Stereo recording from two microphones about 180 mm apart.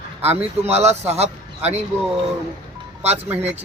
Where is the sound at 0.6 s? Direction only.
35° right (ahead or behind).